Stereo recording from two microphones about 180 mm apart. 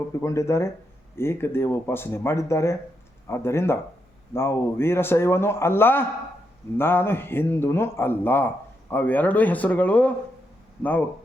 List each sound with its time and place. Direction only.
0.1 s a man's voice: 15° left (ahead or behind)